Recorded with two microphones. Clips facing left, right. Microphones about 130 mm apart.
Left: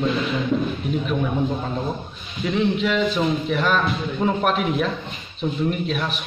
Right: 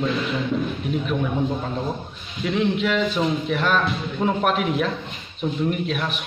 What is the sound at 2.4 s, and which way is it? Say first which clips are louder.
A man's voice: left 1 dB; centre (ahead or behind).